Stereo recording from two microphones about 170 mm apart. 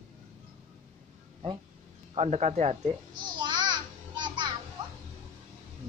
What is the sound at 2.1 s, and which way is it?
Speech, 40° right (ahead or behind).